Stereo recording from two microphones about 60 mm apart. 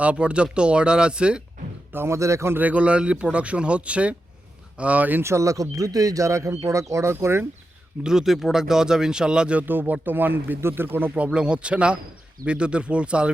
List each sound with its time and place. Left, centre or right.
0.0 s speech: centre
1.9 s speech: right
2.1 s speech: right
2.6 s speech: right
5.2 s speech: right
8.0 s speech: centre
9.6 s speech: right
11.3 s speech: centre